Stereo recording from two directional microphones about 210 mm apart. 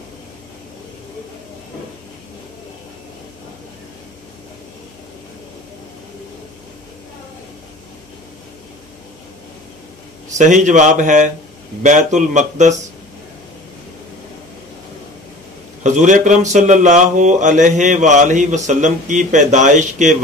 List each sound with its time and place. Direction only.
10.3 s a man's voice: 35° right (ahead or behind)
15.8 s a man's voice: 35° right (ahead or behind)